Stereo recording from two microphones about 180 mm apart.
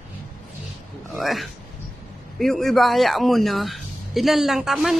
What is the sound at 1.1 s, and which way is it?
A man's voice, centre (ahead or behind).